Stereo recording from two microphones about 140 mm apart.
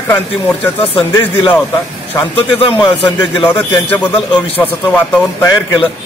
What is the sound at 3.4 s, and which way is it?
Speech, 10° left (ahead or behind).